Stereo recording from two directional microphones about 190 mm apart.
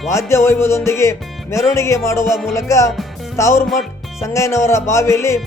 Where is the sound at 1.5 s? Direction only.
15° left (ahead or behind).